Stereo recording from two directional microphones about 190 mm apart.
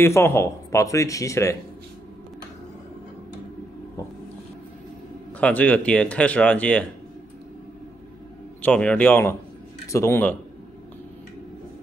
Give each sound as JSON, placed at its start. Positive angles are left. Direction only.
{"t": 0.0, "sound": "speech", "side_deg": 15}
{"t": 5.4, "sound": "speech", "side_deg": 10}
{"t": 8.6, "sound": "speech", "side_deg": 5}